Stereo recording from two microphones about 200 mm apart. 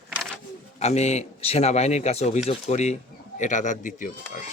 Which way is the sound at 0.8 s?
35° left (ahead or behind).